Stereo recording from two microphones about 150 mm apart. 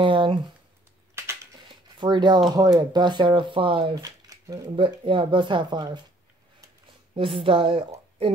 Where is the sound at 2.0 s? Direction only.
30° right (ahead or behind).